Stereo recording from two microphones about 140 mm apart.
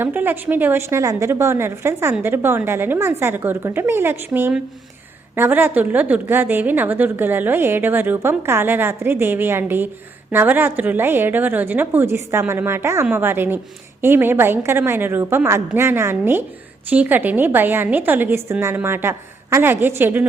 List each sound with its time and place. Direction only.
0.0 s a woman's voice: 15° right (ahead or behind)